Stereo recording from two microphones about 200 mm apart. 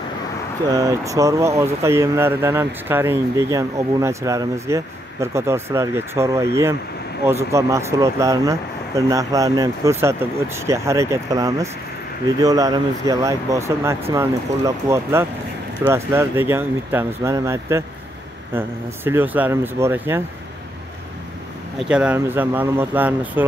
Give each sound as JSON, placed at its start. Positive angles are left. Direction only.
{"t": 0.7, "sound": "speech", "side_deg": -15}
{"t": 21.7, "sound": "speech", "side_deg": -5}